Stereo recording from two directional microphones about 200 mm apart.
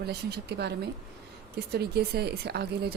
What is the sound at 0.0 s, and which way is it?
A woman's voice, 55° right (ahead or behind).